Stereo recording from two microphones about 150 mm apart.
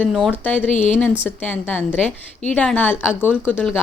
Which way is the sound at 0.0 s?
5° left (ahead or behind).